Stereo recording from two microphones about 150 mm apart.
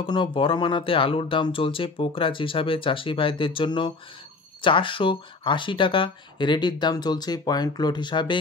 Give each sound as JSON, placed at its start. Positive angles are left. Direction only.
{"t": 0.0, "sound": "speech", "side_deg": 35}